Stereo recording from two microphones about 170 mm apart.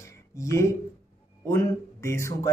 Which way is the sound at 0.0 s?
15° left (ahead or behind).